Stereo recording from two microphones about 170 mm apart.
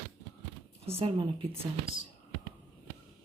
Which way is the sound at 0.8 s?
35° right (ahead or behind).